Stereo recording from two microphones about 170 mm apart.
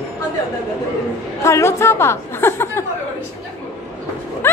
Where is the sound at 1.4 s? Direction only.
15° left (ahead or behind).